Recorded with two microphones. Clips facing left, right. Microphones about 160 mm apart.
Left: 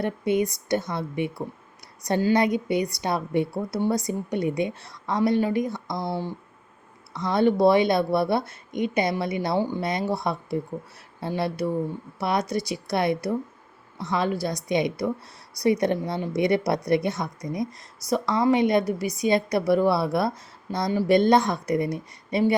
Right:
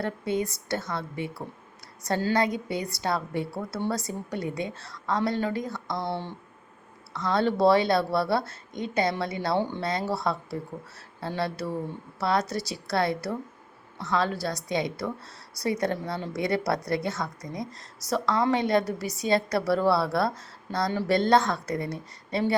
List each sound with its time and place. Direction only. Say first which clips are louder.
0.0 s a woman's voice: left 5 dB; 20° left (ahead or behind)